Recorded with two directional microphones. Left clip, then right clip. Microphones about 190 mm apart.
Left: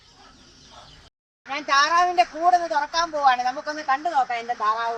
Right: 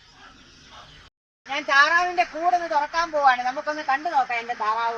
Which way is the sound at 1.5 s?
20° left (ahead or behind).